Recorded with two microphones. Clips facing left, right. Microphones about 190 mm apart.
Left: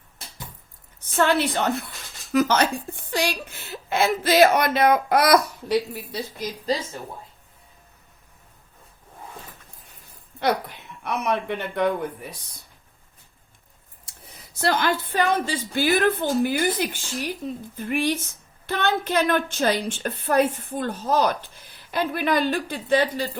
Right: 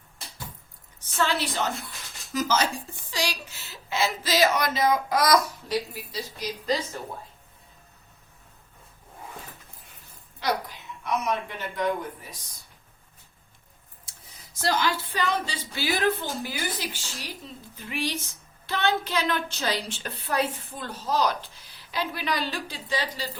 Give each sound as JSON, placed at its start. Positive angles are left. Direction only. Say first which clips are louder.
{"t": 1.0, "sound": "a woman's voice", "louder": "left 6 dB", "side_deg": 55}
{"t": 10.4, "sound": "a woman's voice", "louder": "left 5 dB", "side_deg": 60}
{"t": 14.0, "sound": "speech", "louder": "left 5 dB", "side_deg": 60}